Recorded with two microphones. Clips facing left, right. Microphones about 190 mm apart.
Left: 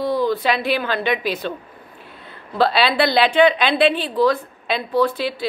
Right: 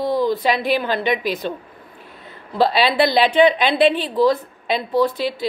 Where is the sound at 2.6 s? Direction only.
20° right (ahead or behind).